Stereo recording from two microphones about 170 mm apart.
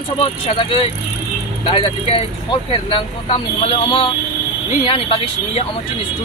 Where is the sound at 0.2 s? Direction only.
35° left (ahead or behind).